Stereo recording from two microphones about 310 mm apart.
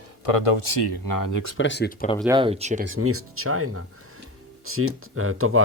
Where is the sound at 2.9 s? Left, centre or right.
Right.